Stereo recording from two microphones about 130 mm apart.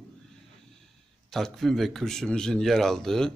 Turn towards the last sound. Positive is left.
turn(degrees=5)  # may be behind; listen again after turning